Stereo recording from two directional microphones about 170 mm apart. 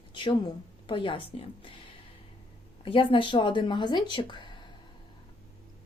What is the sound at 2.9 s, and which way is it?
Speech, 30° left (ahead or behind).